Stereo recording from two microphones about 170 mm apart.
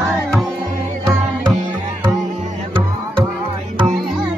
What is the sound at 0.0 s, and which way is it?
Music, centre (ahead or behind).